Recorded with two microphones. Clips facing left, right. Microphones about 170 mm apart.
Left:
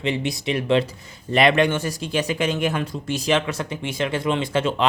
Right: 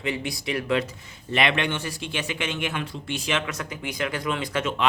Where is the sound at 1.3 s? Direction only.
40° left (ahead or behind).